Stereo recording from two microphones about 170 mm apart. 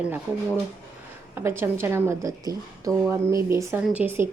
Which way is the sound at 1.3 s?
15° right (ahead or behind).